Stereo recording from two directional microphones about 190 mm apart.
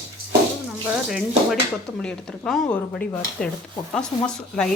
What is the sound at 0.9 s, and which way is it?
Speech, centre (ahead or behind).